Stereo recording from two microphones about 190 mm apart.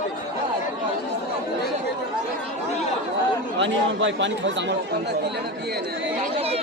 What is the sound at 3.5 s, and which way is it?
Speech, 75° right (ahead or behind).